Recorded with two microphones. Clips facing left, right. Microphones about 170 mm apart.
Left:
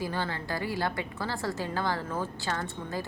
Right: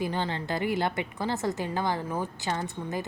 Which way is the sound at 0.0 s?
20° right (ahead or behind).